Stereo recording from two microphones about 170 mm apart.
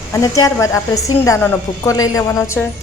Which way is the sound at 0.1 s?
20° left (ahead or behind).